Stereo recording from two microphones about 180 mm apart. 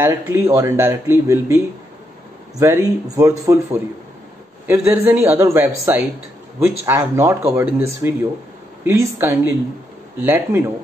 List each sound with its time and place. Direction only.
0.0 s speech: 15° right (ahead or behind)
2.6 s speech: 15° right (ahead or behind)